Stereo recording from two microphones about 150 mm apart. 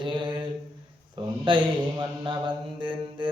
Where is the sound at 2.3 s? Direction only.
35° right (ahead or behind).